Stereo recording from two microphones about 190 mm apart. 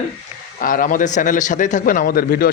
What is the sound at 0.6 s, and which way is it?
A man's voice, 45° left (ahead or behind).